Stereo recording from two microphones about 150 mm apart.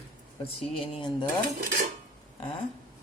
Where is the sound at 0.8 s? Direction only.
35° left (ahead or behind).